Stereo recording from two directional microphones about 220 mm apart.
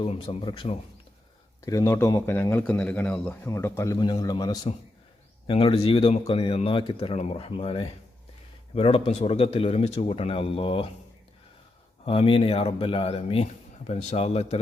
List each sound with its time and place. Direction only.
0.0 s a man's voice: 25° left (ahead or behind)
12.0 s speech: 25° left (ahead or behind)